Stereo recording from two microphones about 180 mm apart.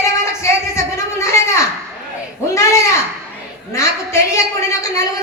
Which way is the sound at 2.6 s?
15° left (ahead or behind).